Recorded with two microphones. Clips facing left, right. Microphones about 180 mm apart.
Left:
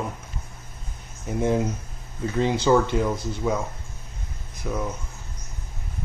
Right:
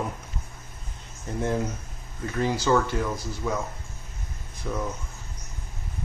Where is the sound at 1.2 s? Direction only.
15° left (ahead or behind).